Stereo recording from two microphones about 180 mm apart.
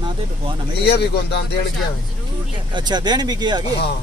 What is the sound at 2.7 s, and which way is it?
A man's voice, 25° right (ahead or behind).